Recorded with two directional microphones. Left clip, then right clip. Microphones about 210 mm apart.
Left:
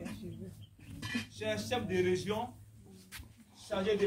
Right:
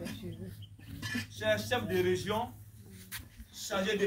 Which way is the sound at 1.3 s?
5° left (ahead or behind).